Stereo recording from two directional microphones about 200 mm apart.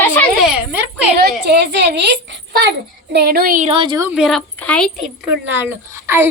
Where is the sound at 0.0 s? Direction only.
10° left (ahead or behind).